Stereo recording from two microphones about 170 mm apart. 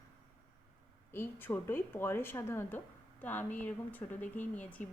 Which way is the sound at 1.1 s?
10° left (ahead or behind).